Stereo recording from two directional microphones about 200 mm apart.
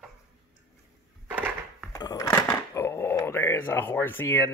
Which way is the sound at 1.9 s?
20° left (ahead or behind).